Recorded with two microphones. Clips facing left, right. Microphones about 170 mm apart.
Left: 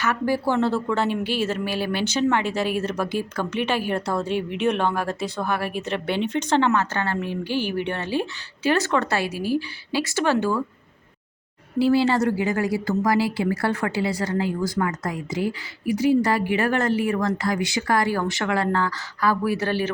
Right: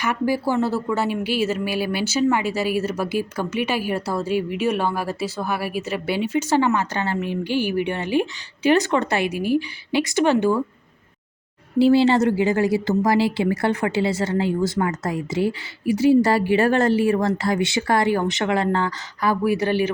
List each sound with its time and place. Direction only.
0.0 s speech: 10° right (ahead or behind)
11.8 s speech: 25° right (ahead or behind)